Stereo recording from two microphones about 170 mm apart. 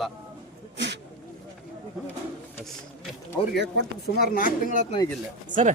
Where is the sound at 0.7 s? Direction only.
90° right.